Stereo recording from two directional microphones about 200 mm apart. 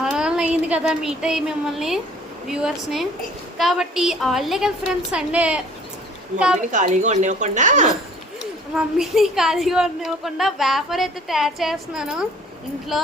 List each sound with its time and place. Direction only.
0.0 s a sound: 5° right (ahead or behind)
2.5 s speech: centre (ahead or behind)
6.6 s a woman's voice: 40° right (ahead or behind)
8.7 s speech: centre (ahead or behind)